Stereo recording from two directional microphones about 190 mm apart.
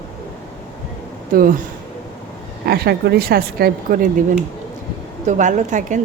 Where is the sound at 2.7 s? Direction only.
60° right (ahead or behind); by 6.0 s 40° right (ahead or behind).